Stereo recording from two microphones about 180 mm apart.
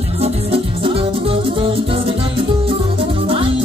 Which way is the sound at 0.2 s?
30° right (ahead or behind).